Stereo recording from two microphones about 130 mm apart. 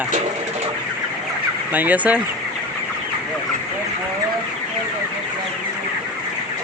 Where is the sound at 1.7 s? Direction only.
15° right (ahead or behind).